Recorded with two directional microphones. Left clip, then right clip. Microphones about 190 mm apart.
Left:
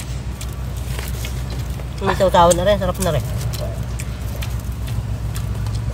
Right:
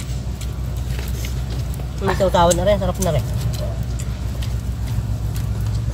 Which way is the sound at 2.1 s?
20° left (ahead or behind).